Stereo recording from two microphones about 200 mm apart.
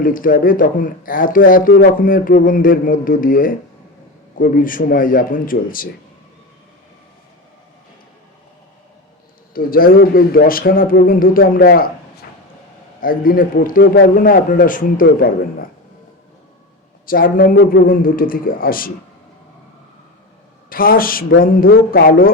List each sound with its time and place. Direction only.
0.0 s speech: 45° left (ahead or behind)
9.5 s speech: 45° left (ahead or behind)
13.0 s speech: 45° left (ahead or behind)
13.8 s speech: 65° left (ahead or behind)
14.2 s speech: 45° left (ahead or behind)
17.1 s speech: 45° left (ahead or behind)
20.7 s speech: 45° left (ahead or behind)